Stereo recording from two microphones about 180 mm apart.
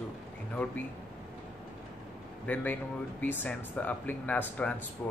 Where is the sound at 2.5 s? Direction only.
10° left (ahead or behind).